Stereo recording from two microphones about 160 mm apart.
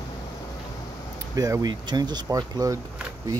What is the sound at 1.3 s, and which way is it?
Speech, 20° right (ahead or behind).